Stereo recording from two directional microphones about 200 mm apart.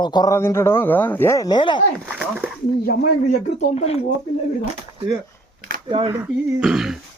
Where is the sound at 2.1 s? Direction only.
5° right (ahead or behind).